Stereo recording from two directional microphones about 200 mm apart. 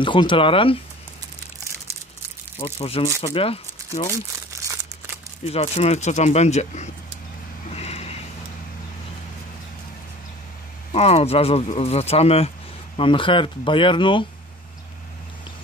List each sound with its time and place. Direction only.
0.0 s speech: 25° left (ahead or behind)
2.6 s speech: 30° left (ahead or behind)
4.5 s crumpling: 10° right (ahead or behind)
5.4 s speech: 30° left (ahead or behind)
7.7 s a sound: 30° left (ahead or behind)
10.9 s speech: 30° left (ahead or behind)